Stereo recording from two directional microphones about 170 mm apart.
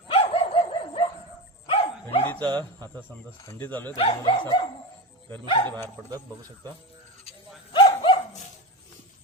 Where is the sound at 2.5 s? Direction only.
25° right (ahead or behind).